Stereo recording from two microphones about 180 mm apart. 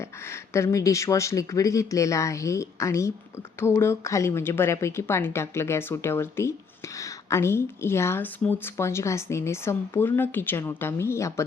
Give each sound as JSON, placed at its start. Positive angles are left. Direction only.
{"t": 0.5, "sound": "a woman's voice", "side_deg": 15}